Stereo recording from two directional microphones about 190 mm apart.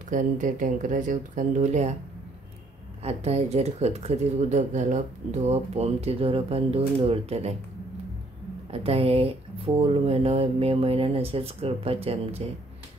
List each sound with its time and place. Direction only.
0.1 s speech: 40° right (ahead or behind)
3.0 s speech: 35° right (ahead or behind)
8.7 s speech: 30° right (ahead or behind)